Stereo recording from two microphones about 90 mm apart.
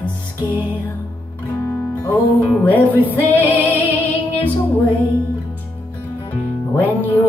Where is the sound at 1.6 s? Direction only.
20° left (ahead or behind).